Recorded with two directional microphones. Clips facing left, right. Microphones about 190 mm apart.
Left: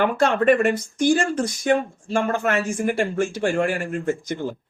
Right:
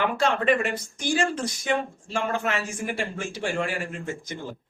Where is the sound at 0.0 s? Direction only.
50° left (ahead or behind).